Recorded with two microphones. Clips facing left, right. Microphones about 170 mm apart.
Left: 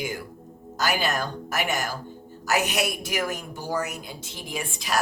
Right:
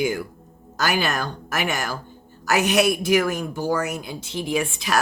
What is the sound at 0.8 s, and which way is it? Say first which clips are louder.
Speech: right 2 dB; 80° right.